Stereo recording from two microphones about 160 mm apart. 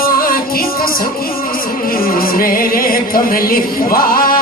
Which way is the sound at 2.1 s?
65° left (ahead or behind).